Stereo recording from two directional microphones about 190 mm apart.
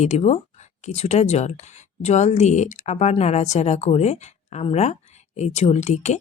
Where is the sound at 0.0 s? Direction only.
35° left (ahead or behind).